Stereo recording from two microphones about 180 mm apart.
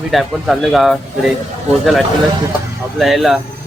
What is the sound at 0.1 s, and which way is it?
Speech, centre (ahead or behind).